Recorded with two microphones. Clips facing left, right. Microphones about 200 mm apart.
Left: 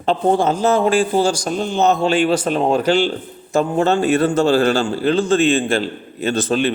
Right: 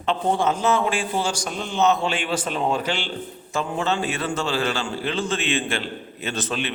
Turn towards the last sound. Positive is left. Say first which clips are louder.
# left 10 dB
turn(degrees=35)  # may be behind; listen again after turning